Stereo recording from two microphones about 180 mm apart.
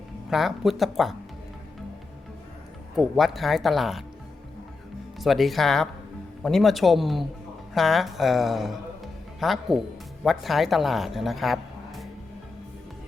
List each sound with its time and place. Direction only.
0.3 s speech: centre (ahead or behind)
2.9 s speech: centre (ahead or behind)
5.2 s speech: centre (ahead or behind)